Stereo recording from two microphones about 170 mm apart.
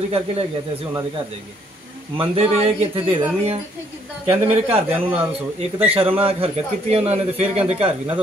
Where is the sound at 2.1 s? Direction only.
35° right (ahead or behind).